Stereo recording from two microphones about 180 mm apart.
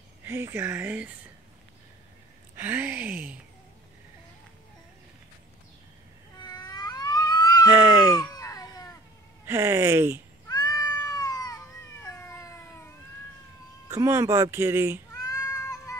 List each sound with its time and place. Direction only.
0.2 s speech: 15° right (ahead or behind)
2.5 s speech: 10° right (ahead or behind)
6.3 s cat: 20° left (ahead or behind)
7.7 s a sound: 15° right (ahead or behind)
8.2 s a sound: 20° left (ahead or behind)
9.5 s speech: 15° right (ahead or behind)
10.5 s cat: 20° left (ahead or behind)
13.8 s speech: 15° right (ahead or behind)
15.1 s cat: 20° left (ahead or behind)